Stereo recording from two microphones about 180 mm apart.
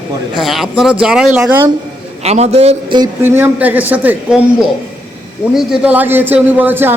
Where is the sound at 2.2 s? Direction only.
35° right (ahead or behind).